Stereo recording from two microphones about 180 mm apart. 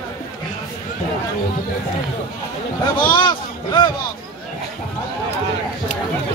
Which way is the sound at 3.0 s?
25° left (ahead or behind).